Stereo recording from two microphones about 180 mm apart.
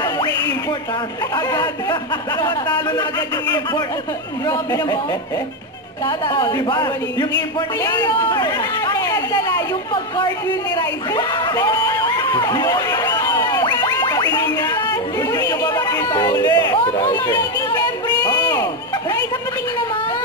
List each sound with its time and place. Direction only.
1.3 s speech: 20° left (ahead or behind)
3.0 s speech: 25° left (ahead or behind)
6.0 s speech: 25° left (ahead or behind)
10.8 s a sound: 25° left (ahead or behind)